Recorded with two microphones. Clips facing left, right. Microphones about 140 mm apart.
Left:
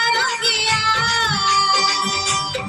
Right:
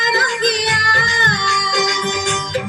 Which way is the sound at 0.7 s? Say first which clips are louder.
Right 2 dB; 55° right (ahead or behind).